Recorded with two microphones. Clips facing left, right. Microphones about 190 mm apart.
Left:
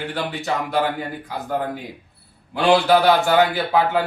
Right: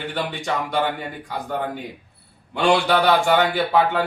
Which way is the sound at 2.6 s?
5° left (ahead or behind).